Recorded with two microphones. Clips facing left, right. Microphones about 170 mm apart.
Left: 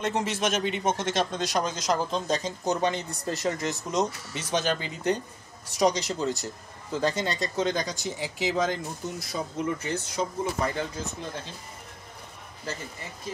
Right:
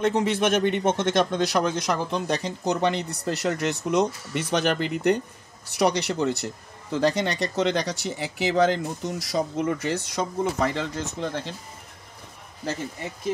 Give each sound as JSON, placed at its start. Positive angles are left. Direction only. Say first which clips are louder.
{"t": 0.0, "sound": "speech", "louder": "right 5 dB", "side_deg": -55}